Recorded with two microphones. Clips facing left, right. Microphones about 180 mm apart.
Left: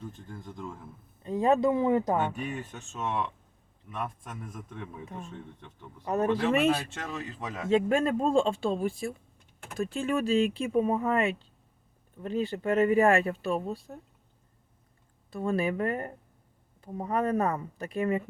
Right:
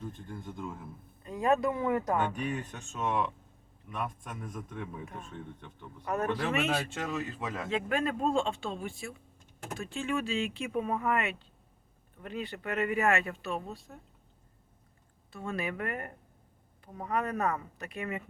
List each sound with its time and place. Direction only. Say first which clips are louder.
0.3 s speech: even; centre (ahead or behind)
1.2 s speech: left 4 dB; 25° left (ahead or behind)
2.1 s speech: left 1 dB; 5° left (ahead or behind)
3.9 s speech: left 1 dB; centre (ahead or behind)
6.1 s speech: left 5 dB; 25° left (ahead or behind)
6.9 s speech: right 2 dB; centre (ahead or behind)
7.7 s speech: left 8 dB; 30° left (ahead or behind)
15.3 s speech: left 7 dB; 35° left (ahead or behind)